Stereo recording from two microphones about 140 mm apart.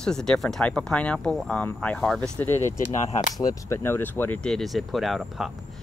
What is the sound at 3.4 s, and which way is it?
Speech, 15° left (ahead or behind).